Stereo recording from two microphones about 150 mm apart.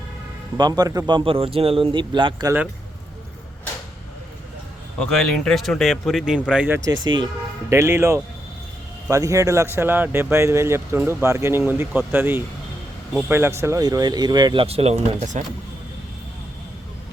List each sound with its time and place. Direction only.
0.5 s a man's voice: 25° right (ahead or behind)
4.9 s speech: 5° left (ahead or behind); by 6.9 s 15° right (ahead or behind)
6.9 s speech: 30° right (ahead or behind)
7.7 s speech: 20° right (ahead or behind); by 15.4 s 55° right (ahead or behind)